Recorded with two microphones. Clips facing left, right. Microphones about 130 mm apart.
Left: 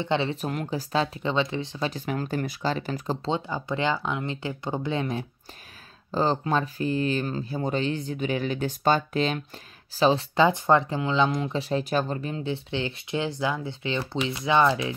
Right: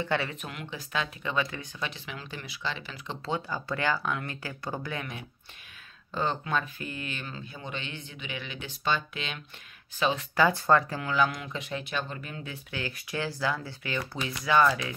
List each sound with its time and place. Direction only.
0.0 s speech: 25° left (ahead or behind)
0.4 s speech: 40° left (ahead or behind)
1.9 s speech: 45° left (ahead or behind)
3.3 s speech: 20° left (ahead or behind)